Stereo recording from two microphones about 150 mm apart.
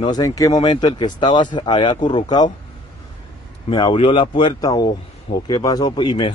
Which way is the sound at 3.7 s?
30° left (ahead or behind).